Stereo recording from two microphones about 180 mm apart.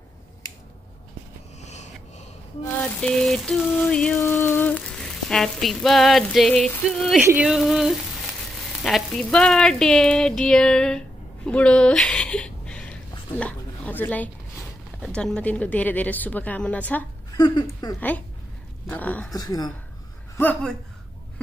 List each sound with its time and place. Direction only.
1.6 s snort: 40° left (ahead or behind)
2.8 s a sound: 5° left (ahead or behind)
15.0 s a woman's voice: 5° left (ahead or behind)
17.3 s speech: 20° left (ahead or behind)
18.9 s a woman's voice: 10° left (ahead or behind)
19.3 s speech: 20° left (ahead or behind)
20.3 s a woman's voice: 10° left (ahead or behind)